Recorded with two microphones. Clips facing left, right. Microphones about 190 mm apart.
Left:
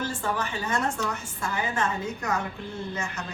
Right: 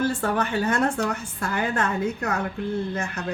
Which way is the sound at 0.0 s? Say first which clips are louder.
Right 6 dB; 60° right (ahead or behind).